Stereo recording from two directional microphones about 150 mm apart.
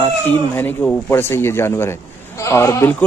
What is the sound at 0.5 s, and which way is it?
Speech, 15° left (ahead or behind).